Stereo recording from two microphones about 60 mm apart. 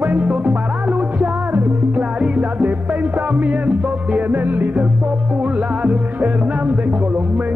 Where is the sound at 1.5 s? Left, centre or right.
Right.